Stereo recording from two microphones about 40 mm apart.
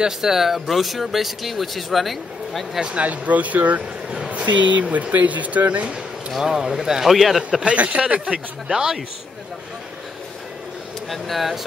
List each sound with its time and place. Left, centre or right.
0.0 s speech: centre
2.9 s speech: right
6.4 s speech: centre
7.6 s speech: right
8.3 s speech: centre
11.1 s speech: centre